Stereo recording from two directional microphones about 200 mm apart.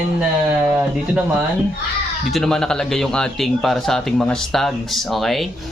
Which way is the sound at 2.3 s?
5° left (ahead or behind).